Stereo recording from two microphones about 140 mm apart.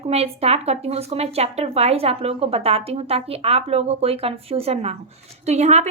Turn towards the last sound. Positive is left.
turn(degrees=-55)  # may be behind; listen again after turning